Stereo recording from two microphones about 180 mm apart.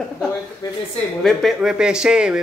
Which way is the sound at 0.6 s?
20° left (ahead or behind).